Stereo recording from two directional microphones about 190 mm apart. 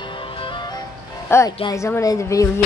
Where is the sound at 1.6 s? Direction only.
20° left (ahead or behind).